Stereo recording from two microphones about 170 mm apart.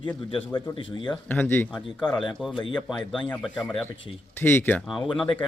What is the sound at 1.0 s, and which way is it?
Speech, 10° left (ahead or behind).